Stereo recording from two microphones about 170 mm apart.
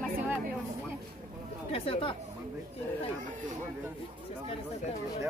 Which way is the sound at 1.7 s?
30° left (ahead or behind).